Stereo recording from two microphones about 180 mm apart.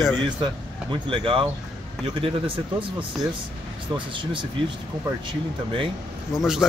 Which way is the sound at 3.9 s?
25° right (ahead or behind).